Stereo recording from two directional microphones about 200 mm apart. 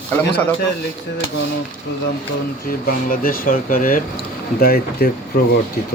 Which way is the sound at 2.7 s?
45° left (ahead or behind).